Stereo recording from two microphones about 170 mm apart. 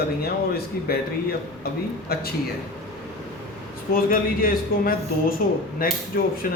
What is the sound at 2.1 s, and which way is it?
Speech, 65° left (ahead or behind).